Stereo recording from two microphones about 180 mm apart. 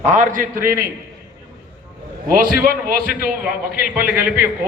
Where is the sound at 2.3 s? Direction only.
50° right (ahead or behind).